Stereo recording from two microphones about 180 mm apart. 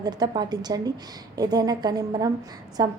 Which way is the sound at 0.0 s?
20° right (ahead or behind).